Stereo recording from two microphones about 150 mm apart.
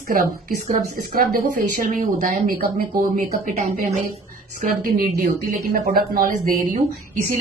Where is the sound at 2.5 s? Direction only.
80° right; by 3.9 s 60° right (ahead or behind).